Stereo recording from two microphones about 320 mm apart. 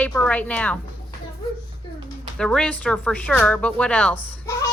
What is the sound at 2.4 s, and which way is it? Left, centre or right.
A woman's voice, centre.